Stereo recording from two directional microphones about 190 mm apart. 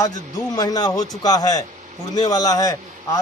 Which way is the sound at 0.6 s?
20° left (ahead or behind).